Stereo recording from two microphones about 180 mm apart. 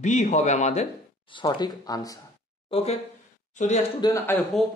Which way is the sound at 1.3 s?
25° left (ahead or behind).